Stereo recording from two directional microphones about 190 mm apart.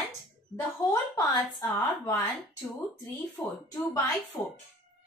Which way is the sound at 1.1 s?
20° left (ahead or behind).